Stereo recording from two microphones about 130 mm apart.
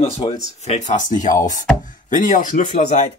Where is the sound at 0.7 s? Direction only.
70° left (ahead or behind).